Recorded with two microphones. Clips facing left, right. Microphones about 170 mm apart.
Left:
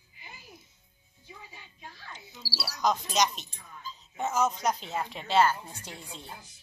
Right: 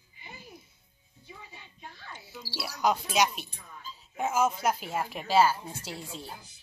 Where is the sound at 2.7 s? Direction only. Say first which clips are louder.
Right 1 dB; 10° right (ahead or behind).